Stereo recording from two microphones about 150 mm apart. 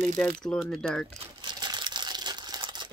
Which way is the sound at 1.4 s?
30° right (ahead or behind).